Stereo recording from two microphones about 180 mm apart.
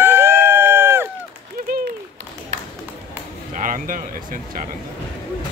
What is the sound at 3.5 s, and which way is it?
Speech, 50° right (ahead or behind).